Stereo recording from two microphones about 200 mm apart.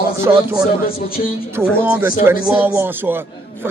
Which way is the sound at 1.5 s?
10° right (ahead or behind).